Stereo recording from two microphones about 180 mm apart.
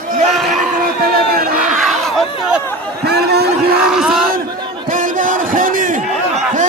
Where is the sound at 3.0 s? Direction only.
65° right (ahead or behind).